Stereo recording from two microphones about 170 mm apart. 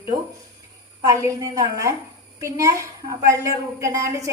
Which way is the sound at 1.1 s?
20° right (ahead or behind).